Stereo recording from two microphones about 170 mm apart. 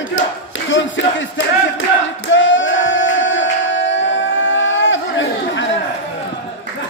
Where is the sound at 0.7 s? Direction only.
90° left.